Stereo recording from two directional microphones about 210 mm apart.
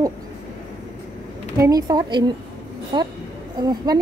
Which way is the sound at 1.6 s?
20° right (ahead or behind).